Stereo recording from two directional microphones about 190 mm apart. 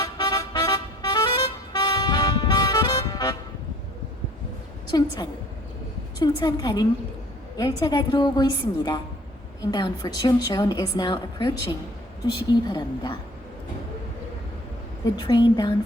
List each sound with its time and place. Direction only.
0.0 s vehicle: 20° left (ahead or behind)
4.9 s a woman's voice: 20° left (ahead or behind)
6.1 s a woman's voice: 20° left (ahead or behind)
15.1 s a woman's voice: 20° left (ahead or behind)